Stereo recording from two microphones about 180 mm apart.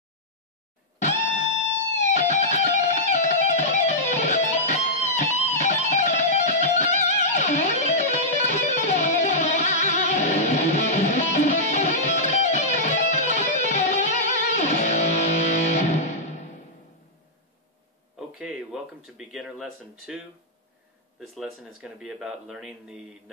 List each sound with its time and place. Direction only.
2.0 s music: 40° left (ahead or behind)
18.4 s speech: 5° right (ahead or behind)
21.4 s speech: 5° right (ahead or behind)